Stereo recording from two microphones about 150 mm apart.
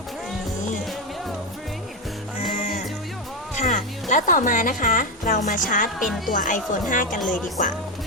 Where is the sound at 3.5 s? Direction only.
55° left (ahead or behind).